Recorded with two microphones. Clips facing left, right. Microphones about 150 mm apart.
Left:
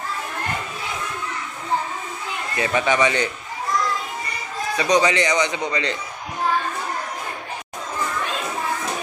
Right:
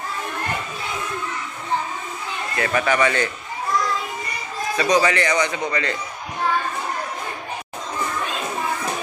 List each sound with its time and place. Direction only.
2.5 s a man's voice: 20° left (ahead or behind)
4.7 s a man's voice: 15° left (ahead or behind)